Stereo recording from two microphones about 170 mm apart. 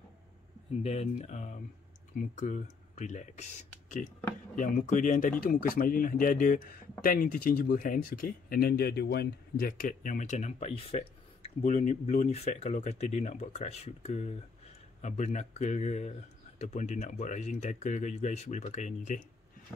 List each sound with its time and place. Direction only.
0.8 s speech: 40° left (ahead or behind)
4.6 s speech: 50° left (ahead or behind)